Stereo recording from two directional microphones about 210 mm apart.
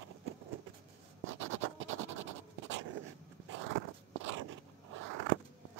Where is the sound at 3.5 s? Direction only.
60° right (ahead or behind).